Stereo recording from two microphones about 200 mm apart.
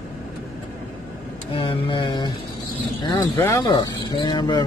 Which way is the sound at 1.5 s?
25° left (ahead or behind).